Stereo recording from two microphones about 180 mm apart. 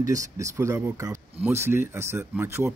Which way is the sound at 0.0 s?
20° right (ahead or behind).